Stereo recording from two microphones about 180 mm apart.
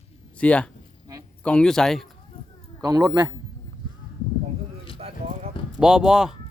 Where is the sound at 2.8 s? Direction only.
20° right (ahead or behind).